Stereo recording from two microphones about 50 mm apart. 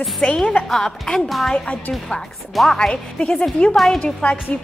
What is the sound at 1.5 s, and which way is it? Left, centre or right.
Speech, left.